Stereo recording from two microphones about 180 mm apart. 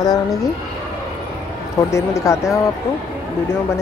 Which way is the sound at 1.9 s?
15° left (ahead or behind).